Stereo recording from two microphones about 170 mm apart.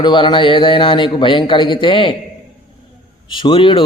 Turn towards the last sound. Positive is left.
turn(degrees=30)  # may be behind; listen again after turning